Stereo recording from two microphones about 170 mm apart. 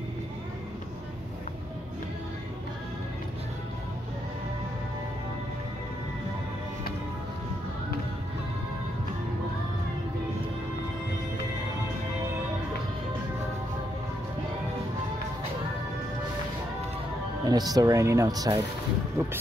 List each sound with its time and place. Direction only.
17.5 s speech: 20° right (ahead or behind)